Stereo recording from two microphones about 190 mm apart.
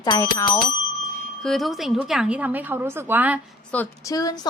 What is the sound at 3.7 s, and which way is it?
Speech, 10° left (ahead or behind).